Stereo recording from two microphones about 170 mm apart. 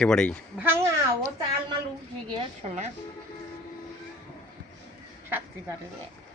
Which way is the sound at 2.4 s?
40° right (ahead or behind).